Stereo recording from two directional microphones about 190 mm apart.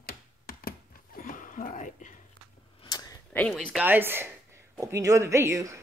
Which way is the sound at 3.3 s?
5° left (ahead or behind).